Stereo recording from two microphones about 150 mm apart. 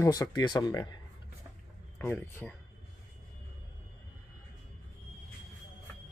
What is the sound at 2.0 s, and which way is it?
Speech, 15° left (ahead or behind).